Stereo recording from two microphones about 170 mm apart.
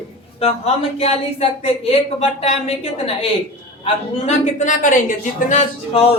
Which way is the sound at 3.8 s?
40° left (ahead or behind).